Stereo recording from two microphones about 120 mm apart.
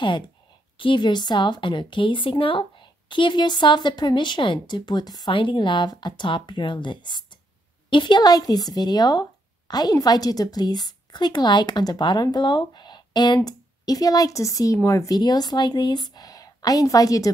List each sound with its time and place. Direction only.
0.7 s a woman's voice: 45° left (ahead or behind)